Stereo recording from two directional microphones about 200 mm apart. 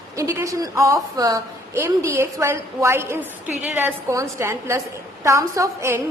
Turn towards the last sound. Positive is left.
turn(degrees=-15)  # may be behind; listen again after turning